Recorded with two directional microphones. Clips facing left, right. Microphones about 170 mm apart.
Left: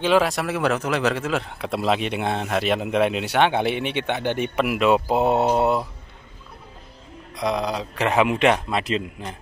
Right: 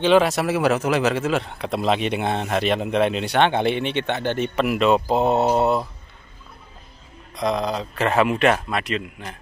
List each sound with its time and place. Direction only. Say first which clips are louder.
0.0 s speech: right 3 dB; centre (ahead or behind)
7.3 s speech: right 1 dB; 10° left (ahead or behind); by 9.4 s 30° left (ahead or behind)